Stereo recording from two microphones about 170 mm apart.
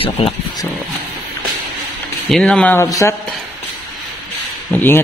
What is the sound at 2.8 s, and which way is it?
Speech, 20° left (ahead or behind).